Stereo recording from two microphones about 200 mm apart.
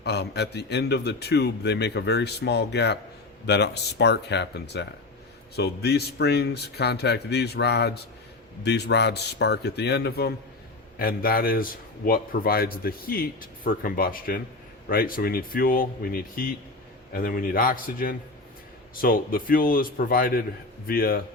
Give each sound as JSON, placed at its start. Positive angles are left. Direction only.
{"t": 0.0, "sound": "a man's voice", "side_deg": 55}